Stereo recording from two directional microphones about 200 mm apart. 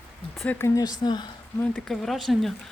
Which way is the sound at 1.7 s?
Centre (ahead or behind).